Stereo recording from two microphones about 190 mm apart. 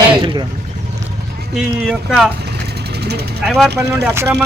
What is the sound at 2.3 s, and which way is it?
Vehicle, 60° right (ahead or behind).